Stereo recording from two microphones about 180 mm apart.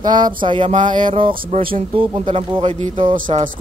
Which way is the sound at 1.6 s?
30° right (ahead or behind).